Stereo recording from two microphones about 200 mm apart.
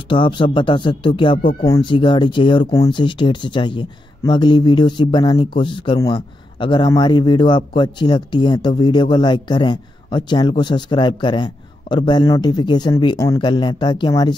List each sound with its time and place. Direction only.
0.1 s speech: 25° left (ahead or behind)
1.4 s speech: 45° left (ahead or behind)
1.7 s speech: 20° left (ahead or behind)